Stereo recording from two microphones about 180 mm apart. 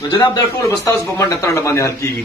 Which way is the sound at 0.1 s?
20° left (ahead or behind).